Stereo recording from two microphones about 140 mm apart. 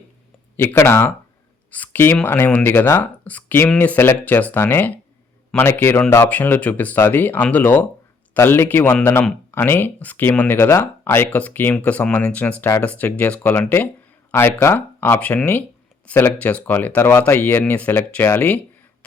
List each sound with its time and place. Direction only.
0.5 s speech: 15° left (ahead or behind)